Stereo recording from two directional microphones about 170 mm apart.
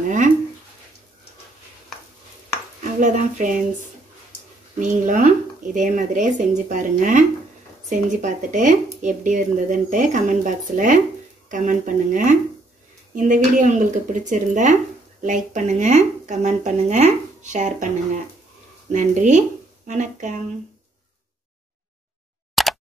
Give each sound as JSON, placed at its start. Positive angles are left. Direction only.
{"t": 2.8, "sound": "speech", "side_deg": -50}
{"t": 4.7, "sound": "speech", "side_deg": -50}
{"t": 22.6, "sound": "a sound", "side_deg": 0}